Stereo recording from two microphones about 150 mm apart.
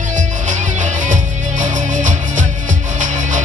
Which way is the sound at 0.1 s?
55° right (ahead or behind).